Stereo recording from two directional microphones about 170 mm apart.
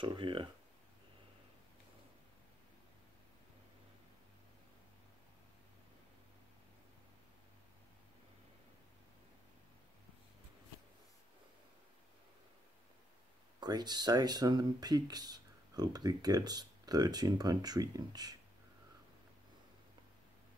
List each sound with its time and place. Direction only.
0.0 s speech: 30° right (ahead or behind)
13.6 s speech: 25° right (ahead or behind)